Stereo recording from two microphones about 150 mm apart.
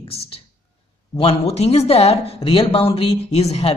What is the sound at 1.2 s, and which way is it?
Speech, 40° left (ahead or behind).